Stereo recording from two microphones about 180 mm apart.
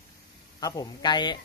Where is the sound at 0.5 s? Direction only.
20° left (ahead or behind).